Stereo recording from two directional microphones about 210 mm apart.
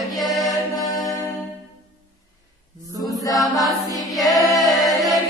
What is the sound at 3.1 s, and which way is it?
Chant, 15° left (ahead or behind).